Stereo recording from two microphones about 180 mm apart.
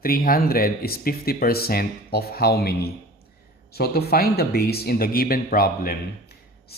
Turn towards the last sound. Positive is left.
turn(degrees=60)  # may be behind; listen again after turning